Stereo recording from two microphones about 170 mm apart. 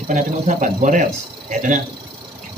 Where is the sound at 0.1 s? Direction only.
50° right (ahead or behind).